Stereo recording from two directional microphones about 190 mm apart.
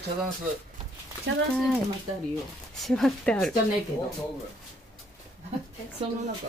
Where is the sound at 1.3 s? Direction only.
65° right (ahead or behind).